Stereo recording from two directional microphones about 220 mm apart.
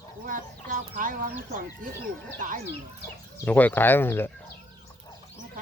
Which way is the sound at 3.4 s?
5° left (ahead or behind).